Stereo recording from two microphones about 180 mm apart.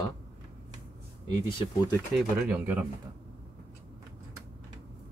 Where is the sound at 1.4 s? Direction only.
25° left (ahead or behind).